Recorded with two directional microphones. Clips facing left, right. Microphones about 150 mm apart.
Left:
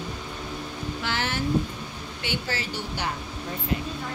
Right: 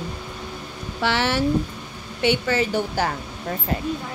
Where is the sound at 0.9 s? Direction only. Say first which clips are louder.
Right 9 dB; 80° right.